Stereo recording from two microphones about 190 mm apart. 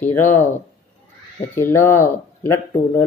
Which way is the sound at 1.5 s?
15° left (ahead or behind).